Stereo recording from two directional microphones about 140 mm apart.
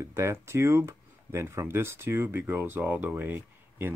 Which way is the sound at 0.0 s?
20° right (ahead or behind).